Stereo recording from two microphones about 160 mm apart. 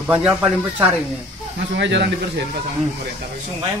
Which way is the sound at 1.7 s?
90° right.